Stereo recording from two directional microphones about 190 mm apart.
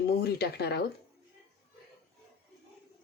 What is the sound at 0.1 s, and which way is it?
Speech, 55° left (ahead or behind).